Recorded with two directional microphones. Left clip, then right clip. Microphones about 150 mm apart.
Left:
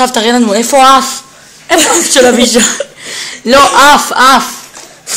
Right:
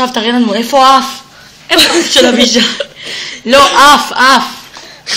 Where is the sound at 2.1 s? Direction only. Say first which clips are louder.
Left 1 dB; 80° left.